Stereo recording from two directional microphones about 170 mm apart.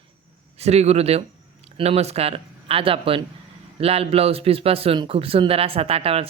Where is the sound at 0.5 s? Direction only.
40° right (ahead or behind).